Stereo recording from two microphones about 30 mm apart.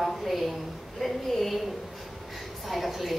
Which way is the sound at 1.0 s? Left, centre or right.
Centre.